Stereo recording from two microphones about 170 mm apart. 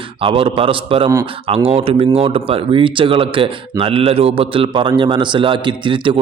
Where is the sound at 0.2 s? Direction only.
30° right (ahead or behind).